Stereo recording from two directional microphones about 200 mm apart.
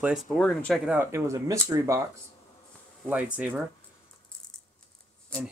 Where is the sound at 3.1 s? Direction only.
5° right (ahead or behind).